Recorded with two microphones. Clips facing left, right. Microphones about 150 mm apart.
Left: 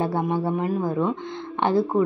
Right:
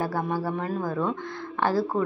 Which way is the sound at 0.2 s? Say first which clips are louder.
Left 4 dB; 25° left (ahead or behind).